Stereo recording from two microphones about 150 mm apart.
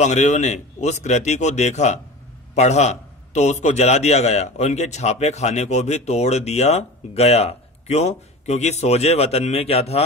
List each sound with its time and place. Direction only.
0.0 s a man's voice: 50° left (ahead or behind)